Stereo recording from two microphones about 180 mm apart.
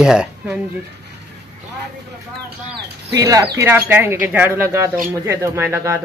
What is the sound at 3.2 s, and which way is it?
Speech, 20° right (ahead or behind).